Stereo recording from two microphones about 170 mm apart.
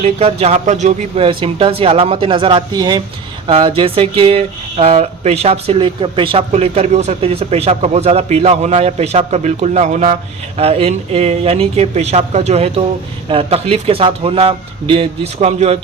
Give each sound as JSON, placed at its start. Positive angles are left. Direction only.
{"t": 0.0, "sound": "speech", "side_deg": -35}